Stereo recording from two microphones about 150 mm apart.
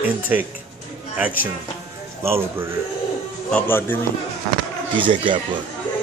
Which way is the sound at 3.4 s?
10° left (ahead or behind).